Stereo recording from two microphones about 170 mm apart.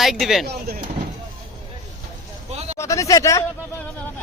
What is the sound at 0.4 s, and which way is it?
Speech, 75° right (ahead or behind).